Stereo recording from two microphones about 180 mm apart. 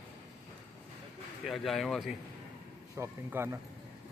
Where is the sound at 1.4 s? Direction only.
Centre (ahead or behind).